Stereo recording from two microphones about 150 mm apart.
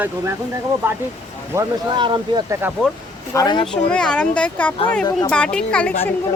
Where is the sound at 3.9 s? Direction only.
5° left (ahead or behind).